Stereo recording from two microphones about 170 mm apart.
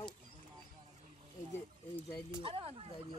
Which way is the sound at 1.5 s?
10° left (ahead or behind).